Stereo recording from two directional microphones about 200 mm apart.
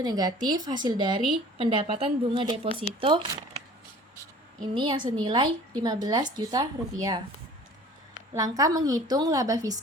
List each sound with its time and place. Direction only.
0.0 s a woman's voice: 20° right (ahead or behind)
4.6 s a woman's voice: 25° right (ahead or behind)
8.4 s a woman's voice: 15° right (ahead or behind)